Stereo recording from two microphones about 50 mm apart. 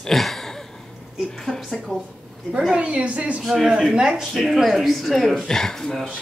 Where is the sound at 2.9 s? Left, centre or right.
Right.